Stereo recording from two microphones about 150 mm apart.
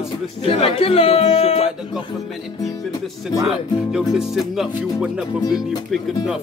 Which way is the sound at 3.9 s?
5° right (ahead or behind).